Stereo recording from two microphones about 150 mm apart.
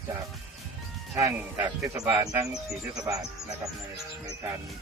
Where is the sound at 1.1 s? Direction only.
20° right (ahead or behind).